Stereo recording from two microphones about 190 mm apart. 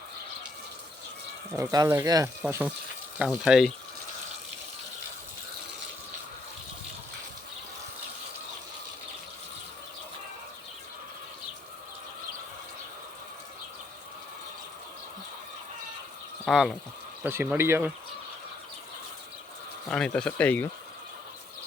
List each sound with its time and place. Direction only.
1.5 s speech: 15° right (ahead or behind)
3.2 s speech: centre (ahead or behind)
16.5 s speech: centre (ahead or behind)
17.2 s speech: 10° right (ahead or behind)
19.9 s speech: 5° left (ahead or behind)